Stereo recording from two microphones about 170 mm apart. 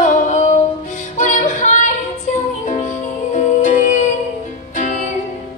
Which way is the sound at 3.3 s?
45° left (ahead or behind).